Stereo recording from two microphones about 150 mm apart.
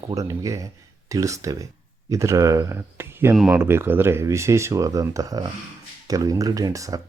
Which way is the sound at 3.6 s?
15° right (ahead or behind).